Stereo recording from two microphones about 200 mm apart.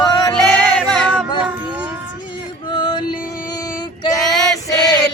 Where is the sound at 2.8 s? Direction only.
20° left (ahead or behind).